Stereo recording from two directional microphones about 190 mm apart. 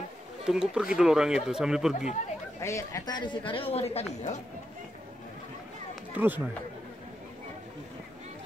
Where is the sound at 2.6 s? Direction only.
15° left (ahead or behind); by 4.0 s 35° left (ahead or behind).